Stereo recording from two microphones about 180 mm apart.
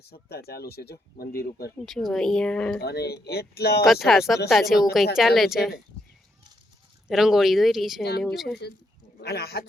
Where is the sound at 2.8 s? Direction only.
65° left (ahead or behind).